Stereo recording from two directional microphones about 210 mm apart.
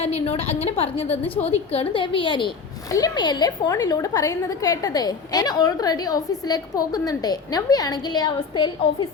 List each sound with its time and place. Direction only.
0.0 s a woman's voice: 30° left (ahead or behind)